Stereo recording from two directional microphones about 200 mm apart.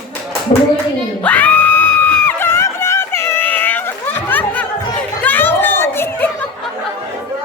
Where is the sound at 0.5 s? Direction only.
30° left (ahead or behind).